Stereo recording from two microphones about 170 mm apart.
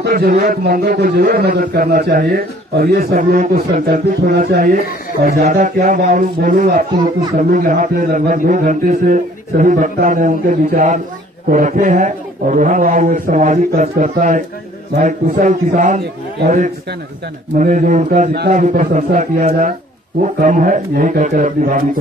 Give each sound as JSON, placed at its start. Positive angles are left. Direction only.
{"t": 0.0, "sound": "a man's voice", "side_deg": -60}